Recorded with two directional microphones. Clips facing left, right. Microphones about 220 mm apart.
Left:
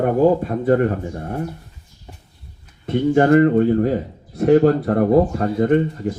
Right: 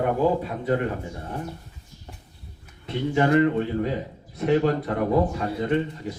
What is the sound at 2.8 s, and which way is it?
A man's voice, 50° left (ahead or behind).